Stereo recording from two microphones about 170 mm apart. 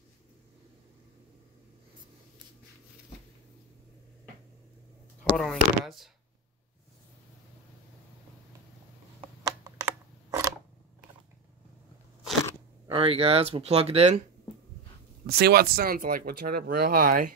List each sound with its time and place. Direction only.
5.3 s speech: centre (ahead or behind)
9.4 s a sound: 20° right (ahead or behind)
12.8 s speech: 30° right (ahead or behind)
15.2 s speech: 70° right (ahead or behind)